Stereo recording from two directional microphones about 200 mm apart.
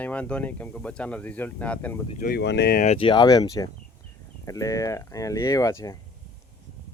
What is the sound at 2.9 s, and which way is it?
Speech, 25° left (ahead or behind).